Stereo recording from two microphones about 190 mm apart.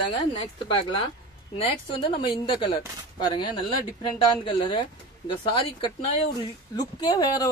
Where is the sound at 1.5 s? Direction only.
25° left (ahead or behind).